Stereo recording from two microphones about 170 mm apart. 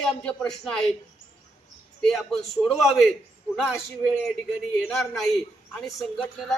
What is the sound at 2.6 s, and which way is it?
Speech, centre (ahead or behind).